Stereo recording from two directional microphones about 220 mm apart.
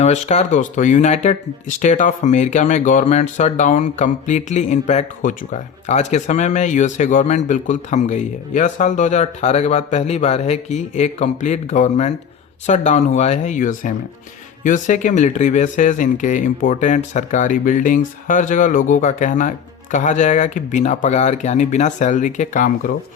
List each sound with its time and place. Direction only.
0.0 s speech: 30° left (ahead or behind)